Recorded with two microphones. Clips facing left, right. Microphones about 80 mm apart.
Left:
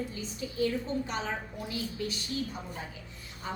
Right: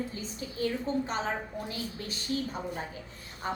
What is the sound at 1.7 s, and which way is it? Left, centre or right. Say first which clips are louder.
Speech: left 3 dB; right.